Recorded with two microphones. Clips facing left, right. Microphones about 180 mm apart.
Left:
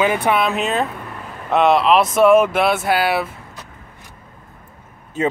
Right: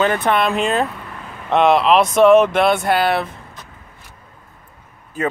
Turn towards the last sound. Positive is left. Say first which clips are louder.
# left 2 dB
turn(degrees=25)  # may be behind; listen again after turning